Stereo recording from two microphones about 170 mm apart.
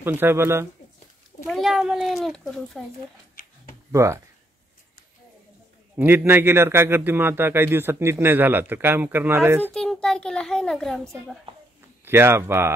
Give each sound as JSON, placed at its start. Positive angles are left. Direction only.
{"t": 0.0, "sound": "a man's voice", "side_deg": -10}
{"t": 1.5, "sound": "a child's voice", "side_deg": 0}
{"t": 3.4, "sound": "a sound", "side_deg": 55}
{"t": 3.9, "sound": "a man's voice", "side_deg": -15}
{"t": 5.9, "sound": "a man's voice", "side_deg": -10}
{"t": 9.8, "sound": "a child's voice", "side_deg": 5}
{"t": 12.0, "sound": "speech", "side_deg": -15}